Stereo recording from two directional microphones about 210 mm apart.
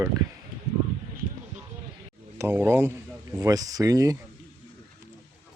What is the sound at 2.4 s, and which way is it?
Speech, 10° right (ahead or behind).